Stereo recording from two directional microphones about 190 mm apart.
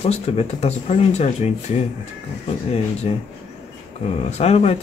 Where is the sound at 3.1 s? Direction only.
30° left (ahead or behind).